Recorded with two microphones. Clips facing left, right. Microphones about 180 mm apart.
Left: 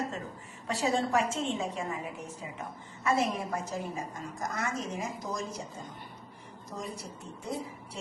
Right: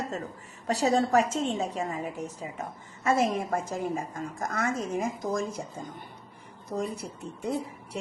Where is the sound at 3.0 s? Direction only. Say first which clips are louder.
Right 4 dB; 45° right (ahead or behind).